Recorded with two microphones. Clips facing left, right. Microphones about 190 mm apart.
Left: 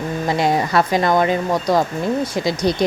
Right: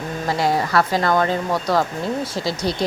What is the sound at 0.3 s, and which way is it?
Speech, 20° left (ahead or behind).